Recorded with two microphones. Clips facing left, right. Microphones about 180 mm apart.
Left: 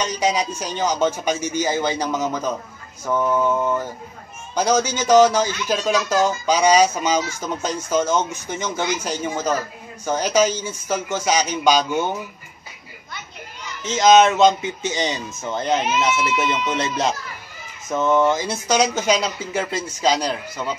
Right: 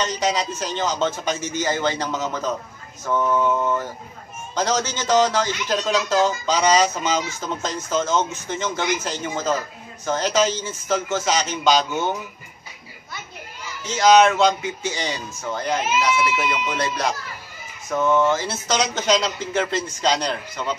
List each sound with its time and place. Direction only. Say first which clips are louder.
0.0 s speech: left 1 dB; 10° left (ahead or behind)
13.8 s speech: left 1 dB; 20° left (ahead or behind)